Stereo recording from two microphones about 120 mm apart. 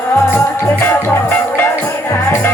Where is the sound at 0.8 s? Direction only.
20° left (ahead or behind).